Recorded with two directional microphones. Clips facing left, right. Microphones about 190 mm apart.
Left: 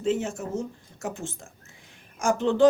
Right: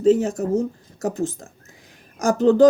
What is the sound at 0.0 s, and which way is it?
Speech, 40° right (ahead or behind).